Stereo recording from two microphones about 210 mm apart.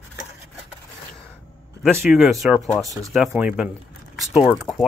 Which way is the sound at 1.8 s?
5° right (ahead or behind).